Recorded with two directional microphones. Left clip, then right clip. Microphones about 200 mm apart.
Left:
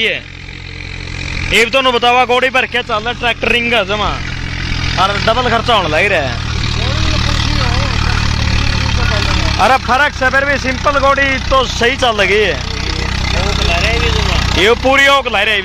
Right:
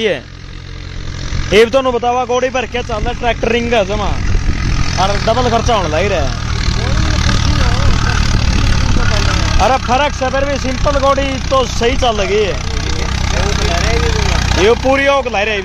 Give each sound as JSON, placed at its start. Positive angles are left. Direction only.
{"t": 1.5, "sound": "speech", "side_deg": -30}
{"t": 2.0, "sound": "speech", "side_deg": 10}
{"t": 3.1, "sound": "speech", "side_deg": -15}
{"t": 4.9, "sound": "speech", "side_deg": 5}
{"t": 7.2, "sound": "vehicle", "side_deg": -20}
{"t": 9.6, "sound": "speech", "side_deg": 10}
{"t": 9.9, "sound": "speech", "side_deg": 0}
{"t": 14.1, "sound": "speech", "side_deg": 0}